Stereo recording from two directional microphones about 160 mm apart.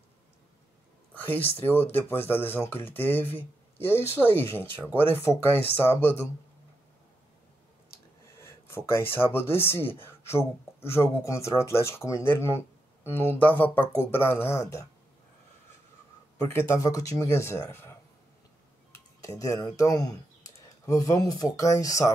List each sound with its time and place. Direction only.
1.1 s speech: 10° left (ahead or behind)
7.9 s speech: 15° left (ahead or behind)
16.5 s speech: 15° left (ahead or behind)